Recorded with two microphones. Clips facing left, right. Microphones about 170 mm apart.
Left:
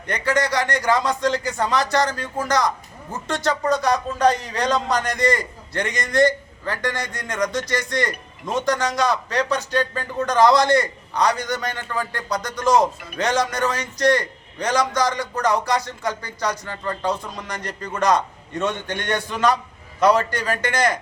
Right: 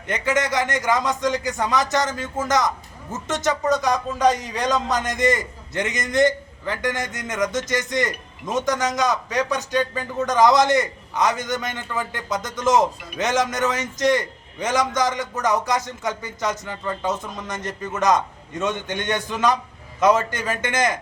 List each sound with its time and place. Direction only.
0.1 s a man's voice: 20° right (ahead or behind)